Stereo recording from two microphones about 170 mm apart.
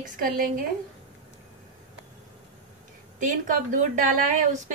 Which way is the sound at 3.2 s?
50° right (ahead or behind).